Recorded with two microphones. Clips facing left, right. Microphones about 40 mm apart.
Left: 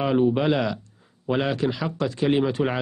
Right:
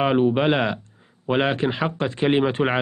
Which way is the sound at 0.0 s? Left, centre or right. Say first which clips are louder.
Right 2 dB; right.